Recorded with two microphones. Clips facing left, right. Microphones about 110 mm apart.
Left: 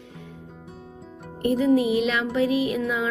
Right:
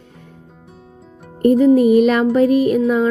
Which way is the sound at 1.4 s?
45° right (ahead or behind).